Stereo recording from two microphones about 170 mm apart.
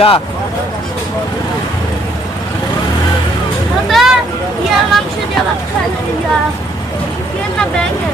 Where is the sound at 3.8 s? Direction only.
Centre (ahead or behind).